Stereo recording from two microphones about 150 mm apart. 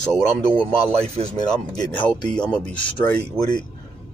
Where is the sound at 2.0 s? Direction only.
5° left (ahead or behind).